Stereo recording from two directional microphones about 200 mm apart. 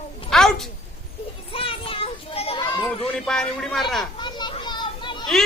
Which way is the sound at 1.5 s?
25° left (ahead or behind).